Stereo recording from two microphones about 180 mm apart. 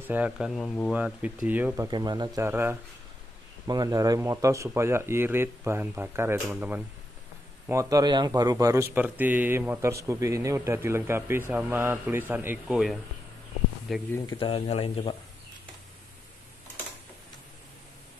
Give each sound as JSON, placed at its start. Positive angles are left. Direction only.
{"t": 0.0, "sound": "speech", "side_deg": -10}
{"t": 1.9, "sound": "speech", "side_deg": -25}
{"t": 14.4, "sound": "speech", "side_deg": 30}